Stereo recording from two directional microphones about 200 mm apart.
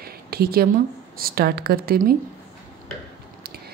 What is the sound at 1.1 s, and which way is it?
Speech, 50° right (ahead or behind).